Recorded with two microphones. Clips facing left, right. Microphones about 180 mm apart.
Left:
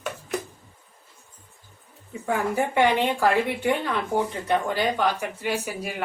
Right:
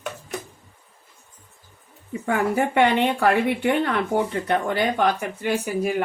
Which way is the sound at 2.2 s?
65° right (ahead or behind).